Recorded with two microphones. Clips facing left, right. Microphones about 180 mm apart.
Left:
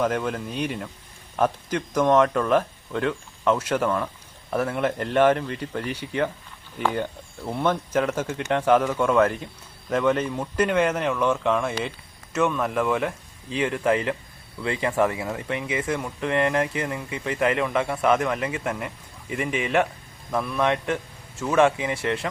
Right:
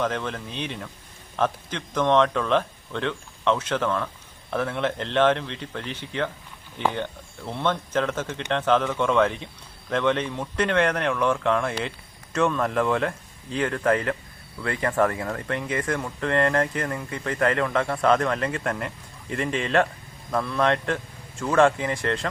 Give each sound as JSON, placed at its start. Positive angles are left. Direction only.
{"t": 0.0, "sound": "speech", "side_deg": 10}